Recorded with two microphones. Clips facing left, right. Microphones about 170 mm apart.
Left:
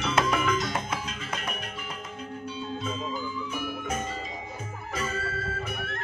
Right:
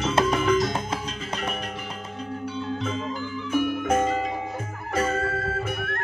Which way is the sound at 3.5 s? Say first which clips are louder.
Right 14 dB; 60° right (ahead or behind).